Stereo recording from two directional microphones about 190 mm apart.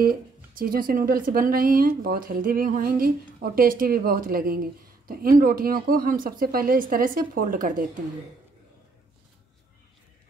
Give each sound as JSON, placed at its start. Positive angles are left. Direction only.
{"t": 0.0, "sound": "speech", "side_deg": -50}